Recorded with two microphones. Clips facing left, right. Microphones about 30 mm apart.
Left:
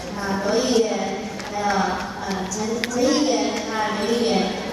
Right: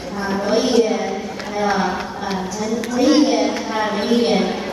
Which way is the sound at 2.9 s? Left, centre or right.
Right.